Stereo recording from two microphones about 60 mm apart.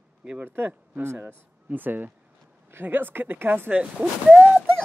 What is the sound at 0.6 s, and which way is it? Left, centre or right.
Speech, right.